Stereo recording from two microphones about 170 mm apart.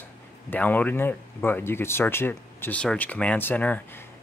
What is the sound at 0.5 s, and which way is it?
Speech, 10° left (ahead or behind).